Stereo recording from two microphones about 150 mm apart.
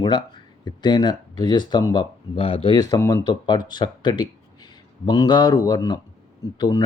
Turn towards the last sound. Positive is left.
turn(degrees=30)  # may be behind; listen again after turning